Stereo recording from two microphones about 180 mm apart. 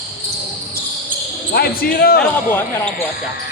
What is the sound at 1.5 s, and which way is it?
Basketball bounce, 60° left (ahead or behind).